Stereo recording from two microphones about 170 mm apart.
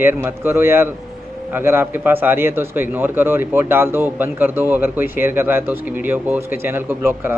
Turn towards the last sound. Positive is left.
turn(degrees=-10)  # may be behind; listen again after turning